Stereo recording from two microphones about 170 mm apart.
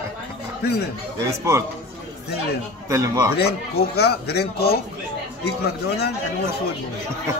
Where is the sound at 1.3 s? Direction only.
15° right (ahead or behind).